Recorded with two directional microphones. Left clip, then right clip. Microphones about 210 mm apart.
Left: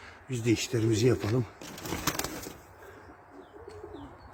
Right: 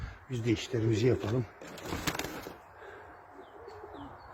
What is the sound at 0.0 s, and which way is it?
Speech, 15° left (ahead or behind).